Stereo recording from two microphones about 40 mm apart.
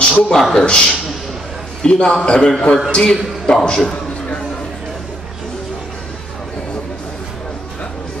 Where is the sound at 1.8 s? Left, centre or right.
Left.